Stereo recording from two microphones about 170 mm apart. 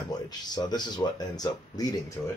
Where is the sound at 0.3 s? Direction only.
25° left (ahead or behind).